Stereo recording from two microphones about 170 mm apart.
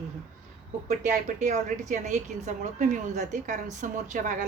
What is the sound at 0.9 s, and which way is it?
A woman's voice, 45° right (ahead or behind).